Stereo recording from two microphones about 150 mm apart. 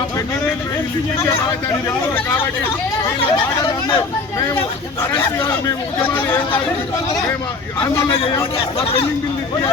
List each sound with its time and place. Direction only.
3.3 s speech: 35° left (ahead or behind)
8.8 s speech: 35° left (ahead or behind)